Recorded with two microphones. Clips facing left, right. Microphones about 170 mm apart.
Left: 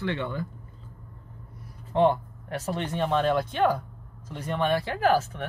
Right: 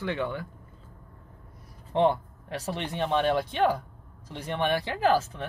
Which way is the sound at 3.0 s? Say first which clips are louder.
Left 1 dB; 10° right (ahead or behind).